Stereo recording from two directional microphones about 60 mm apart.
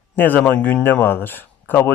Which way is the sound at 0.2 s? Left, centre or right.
Left.